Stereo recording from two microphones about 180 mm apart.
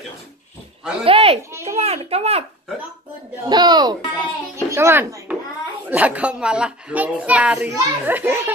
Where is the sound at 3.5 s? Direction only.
25° right (ahead or behind).